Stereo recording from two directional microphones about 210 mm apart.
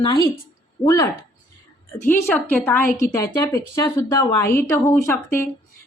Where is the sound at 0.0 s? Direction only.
20° left (ahead or behind).